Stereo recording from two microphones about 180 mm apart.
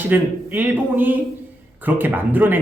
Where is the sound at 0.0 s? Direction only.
10° right (ahead or behind).